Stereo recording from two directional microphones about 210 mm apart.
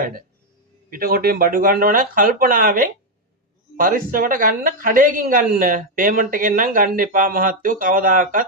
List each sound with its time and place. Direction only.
0.9 s speech: 45° right (ahead or behind)